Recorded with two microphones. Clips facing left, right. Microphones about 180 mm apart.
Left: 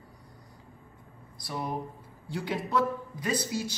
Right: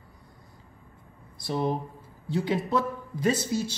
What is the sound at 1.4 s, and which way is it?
A man's voice, 25° right (ahead or behind).